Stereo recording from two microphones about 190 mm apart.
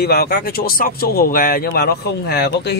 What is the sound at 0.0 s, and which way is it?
Speech, 55° left (ahead or behind).